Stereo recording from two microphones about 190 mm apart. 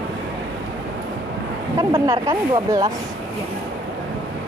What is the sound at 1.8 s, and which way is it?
Speech, 30° right (ahead or behind).